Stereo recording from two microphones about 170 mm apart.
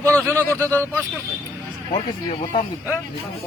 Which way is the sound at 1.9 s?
35° left (ahead or behind).